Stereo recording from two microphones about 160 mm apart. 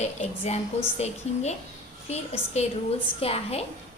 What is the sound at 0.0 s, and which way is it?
A woman's voice, 45° left (ahead or behind).